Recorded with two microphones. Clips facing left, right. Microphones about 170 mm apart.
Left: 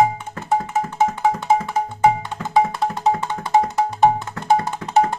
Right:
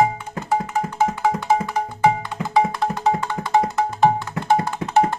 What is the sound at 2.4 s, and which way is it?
Music, 10° right (ahead or behind).